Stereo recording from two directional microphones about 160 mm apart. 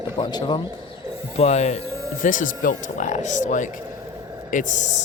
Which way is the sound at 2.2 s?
55° left (ahead or behind).